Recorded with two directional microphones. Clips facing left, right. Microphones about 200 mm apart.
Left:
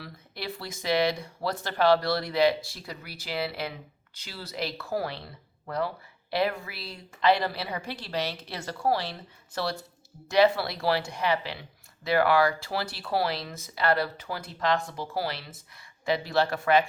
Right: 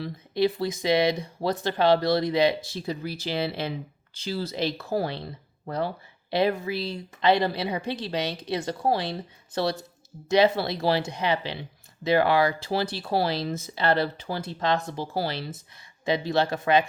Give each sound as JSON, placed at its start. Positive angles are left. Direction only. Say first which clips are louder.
{"t": 0.0, "sound": "speech", "louder": "right 13 dB", "side_deg": -20}